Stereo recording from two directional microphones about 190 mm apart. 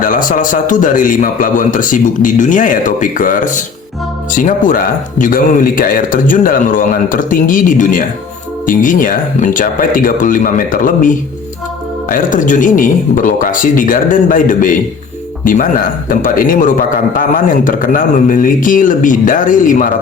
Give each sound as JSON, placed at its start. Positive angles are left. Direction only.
{"t": 0.0, "sound": "a man's voice", "side_deg": 45}